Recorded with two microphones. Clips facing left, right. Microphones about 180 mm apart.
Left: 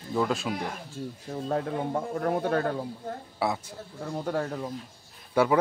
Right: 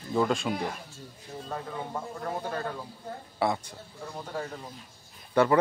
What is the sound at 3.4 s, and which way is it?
Speech, 5° left (ahead or behind).